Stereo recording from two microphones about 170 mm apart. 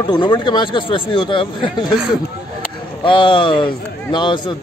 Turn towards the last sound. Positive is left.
turn(degrees=25)  # may be behind; listen again after turning